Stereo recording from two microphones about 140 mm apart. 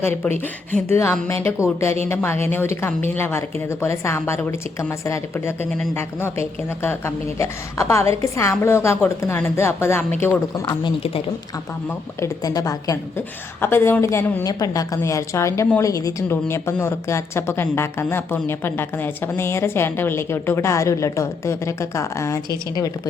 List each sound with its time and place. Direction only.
0.0 s a woman's voice: 15° left (ahead or behind)
10.8 s a woman's voice: 40° left (ahead or behind)
12.2 s a woman's voice: 25° left (ahead or behind)